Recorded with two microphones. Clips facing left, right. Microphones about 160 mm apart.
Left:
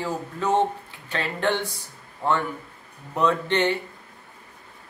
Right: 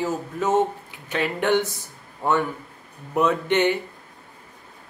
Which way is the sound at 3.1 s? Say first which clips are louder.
Right 2 dB; 20° right (ahead or behind).